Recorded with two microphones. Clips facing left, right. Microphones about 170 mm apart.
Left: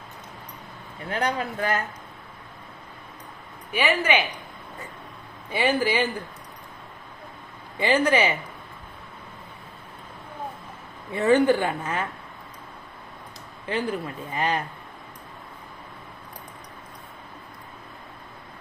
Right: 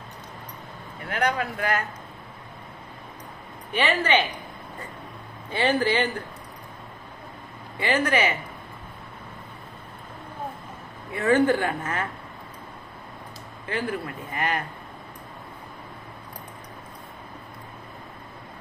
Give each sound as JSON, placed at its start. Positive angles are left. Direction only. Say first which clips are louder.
{"t": 1.1, "sound": "speech", "louder": "right 1 dB", "side_deg": 25}
{"t": 3.7, "sound": "a woman's voice", "louder": "even", "side_deg": 10}
{"t": 5.5, "sound": "a woman's voice", "louder": "even", "side_deg": 10}
{"t": 7.9, "sound": "a woman's voice", "louder": "left 2 dB", "side_deg": 20}
{"t": 11.1, "sound": "a woman's voice", "louder": "left 1 dB", "side_deg": 20}
{"t": 13.7, "sound": "speech", "louder": "left 2 dB", "side_deg": 20}